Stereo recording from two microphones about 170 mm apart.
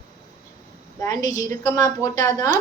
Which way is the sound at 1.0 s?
20° left (ahead or behind).